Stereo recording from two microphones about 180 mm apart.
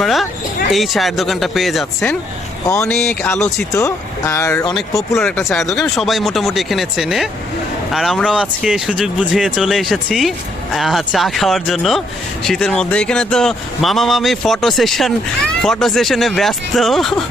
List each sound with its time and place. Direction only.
0.0 s speech: centre (ahead or behind)
3.8 s speech: 15° left (ahead or behind)
5.1 s speech: centre (ahead or behind)